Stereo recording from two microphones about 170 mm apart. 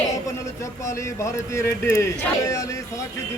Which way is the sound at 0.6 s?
15° left (ahead or behind).